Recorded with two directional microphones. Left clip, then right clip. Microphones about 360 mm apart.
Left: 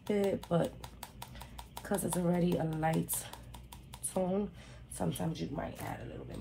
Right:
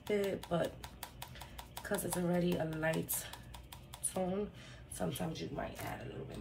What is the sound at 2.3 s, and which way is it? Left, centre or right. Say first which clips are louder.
Speech: left 2 dB; centre.